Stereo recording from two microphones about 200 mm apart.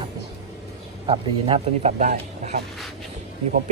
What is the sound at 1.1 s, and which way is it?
Speech, 25° right (ahead or behind).